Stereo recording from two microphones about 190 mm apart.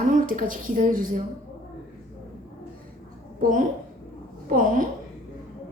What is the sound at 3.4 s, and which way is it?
Speech, 45° right (ahead or behind).